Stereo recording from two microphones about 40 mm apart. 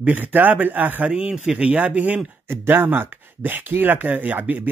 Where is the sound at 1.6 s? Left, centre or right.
Right.